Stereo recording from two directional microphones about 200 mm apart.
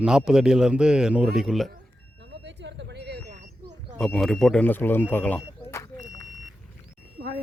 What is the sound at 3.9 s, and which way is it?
Speech, centre (ahead or behind).